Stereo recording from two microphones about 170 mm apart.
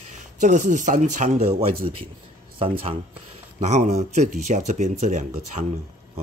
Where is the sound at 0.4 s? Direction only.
45° right (ahead or behind).